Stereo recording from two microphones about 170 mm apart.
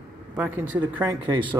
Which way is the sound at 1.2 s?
25° right (ahead or behind).